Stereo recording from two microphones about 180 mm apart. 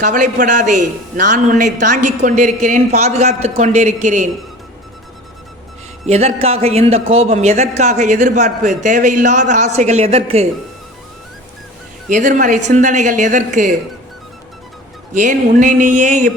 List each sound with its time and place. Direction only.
0.0 s a man's voice: 45° right (ahead or behind)
6.1 s speech: 35° right (ahead or behind)
12.0 s a man's voice: 45° right (ahead or behind)
15.1 s a man's voice: 45° right (ahead or behind)